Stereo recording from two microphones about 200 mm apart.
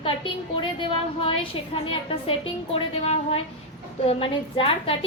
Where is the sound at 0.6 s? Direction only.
25° left (ahead or behind).